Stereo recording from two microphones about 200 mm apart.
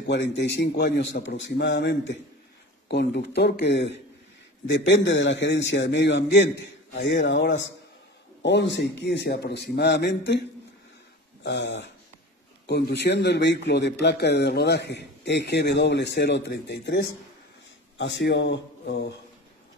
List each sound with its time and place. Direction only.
0.0 s a man's voice: 60° left (ahead or behind)
11.4 s a man's voice: 60° left (ahead or behind)